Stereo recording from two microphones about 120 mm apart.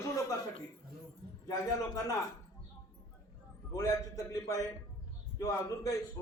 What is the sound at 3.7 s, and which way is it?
A man's voice, 25° left (ahead or behind).